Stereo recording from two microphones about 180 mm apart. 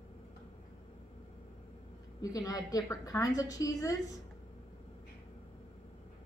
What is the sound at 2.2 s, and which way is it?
A woman's voice, 20° left (ahead or behind).